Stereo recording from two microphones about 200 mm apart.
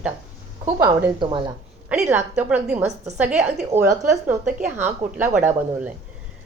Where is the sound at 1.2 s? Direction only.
25° right (ahead or behind).